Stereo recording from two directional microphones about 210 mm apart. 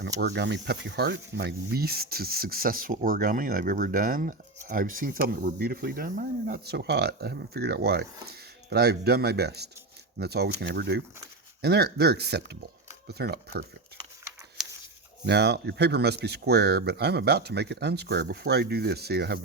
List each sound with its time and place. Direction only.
0.2 s speech: 55° right (ahead or behind)
15.3 s speech: 50° right (ahead or behind)